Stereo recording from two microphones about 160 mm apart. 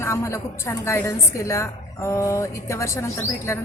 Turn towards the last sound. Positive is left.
turn(degrees=15)  # may be behind; listen again after turning